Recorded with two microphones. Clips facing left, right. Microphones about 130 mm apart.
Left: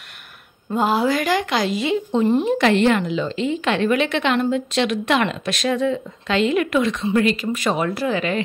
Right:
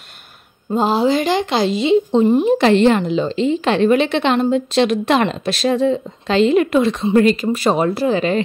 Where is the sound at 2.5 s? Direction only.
30° right (ahead or behind).